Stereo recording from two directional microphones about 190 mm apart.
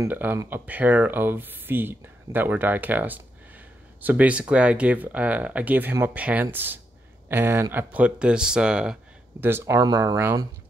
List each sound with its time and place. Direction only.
0.0 s speech: 10° right (ahead or behind)